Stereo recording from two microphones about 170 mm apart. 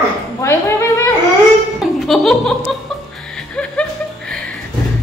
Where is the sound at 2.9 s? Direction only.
Centre (ahead or behind).